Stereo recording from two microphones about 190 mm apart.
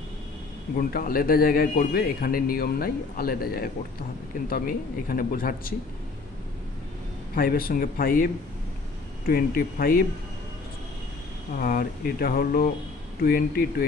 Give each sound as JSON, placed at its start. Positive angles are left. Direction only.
{"t": 0.7, "sound": "a man's voice", "side_deg": 50}
{"t": 7.3, "sound": "a man's voice", "side_deg": 50}
{"t": 11.5, "sound": "a man's voice", "side_deg": 45}